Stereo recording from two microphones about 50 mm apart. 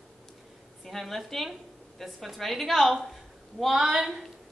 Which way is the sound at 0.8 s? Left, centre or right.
Centre.